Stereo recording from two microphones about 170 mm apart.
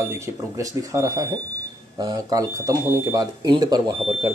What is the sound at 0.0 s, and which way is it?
Speech, 20° right (ahead or behind).